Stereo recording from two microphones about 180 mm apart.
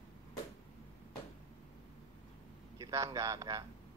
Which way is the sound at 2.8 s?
20° right (ahead or behind).